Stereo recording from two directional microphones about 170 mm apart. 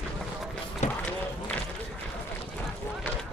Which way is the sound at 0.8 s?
40° left (ahead or behind).